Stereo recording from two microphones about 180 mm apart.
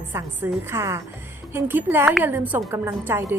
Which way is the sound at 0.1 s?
10° right (ahead or behind).